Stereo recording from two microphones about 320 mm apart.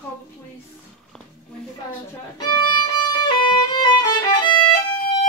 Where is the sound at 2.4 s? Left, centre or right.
Centre.